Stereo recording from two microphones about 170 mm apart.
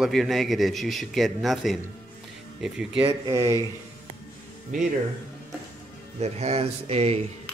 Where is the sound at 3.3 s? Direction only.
15° right (ahead or behind).